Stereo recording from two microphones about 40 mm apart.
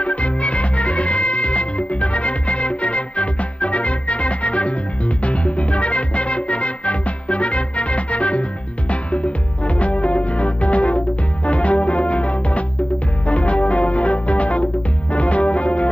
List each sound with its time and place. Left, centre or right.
0.0 s music: left
9.8 s music: left